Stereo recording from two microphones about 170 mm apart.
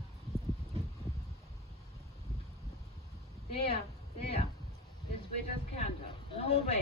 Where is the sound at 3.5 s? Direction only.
35° left (ahead or behind).